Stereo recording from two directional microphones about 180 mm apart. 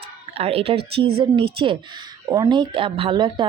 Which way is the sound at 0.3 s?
35° right (ahead or behind).